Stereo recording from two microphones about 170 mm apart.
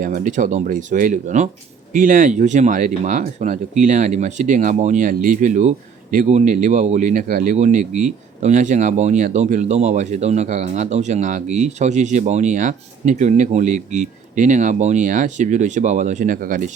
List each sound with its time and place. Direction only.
0.0 s speech: 50° right (ahead or behind)